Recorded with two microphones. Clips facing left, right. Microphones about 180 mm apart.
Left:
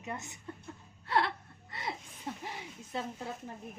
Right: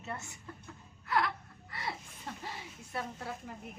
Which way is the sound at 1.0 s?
30° left (ahead or behind).